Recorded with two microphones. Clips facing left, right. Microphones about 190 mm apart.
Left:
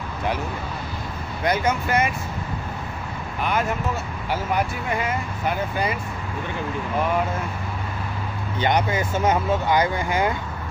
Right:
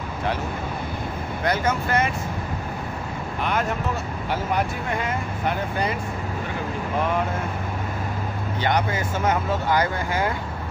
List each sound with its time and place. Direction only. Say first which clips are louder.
1.4 s speech: left 1 dB; 15° left (ahead or behind)
8.5 s speech: left 2 dB; 20° left (ahead or behind)